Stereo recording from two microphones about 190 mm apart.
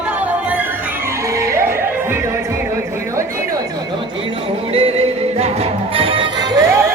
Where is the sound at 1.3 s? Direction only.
15° right (ahead or behind).